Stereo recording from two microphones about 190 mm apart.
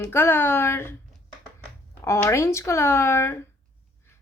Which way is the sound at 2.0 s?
15° left (ahead or behind).